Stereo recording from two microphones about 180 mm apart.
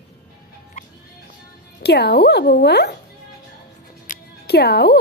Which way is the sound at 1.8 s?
65° left (ahead or behind).